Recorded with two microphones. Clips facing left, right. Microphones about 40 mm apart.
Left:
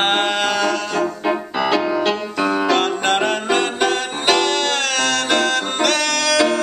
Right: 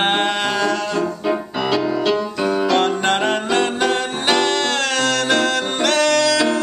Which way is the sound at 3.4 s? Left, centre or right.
Left.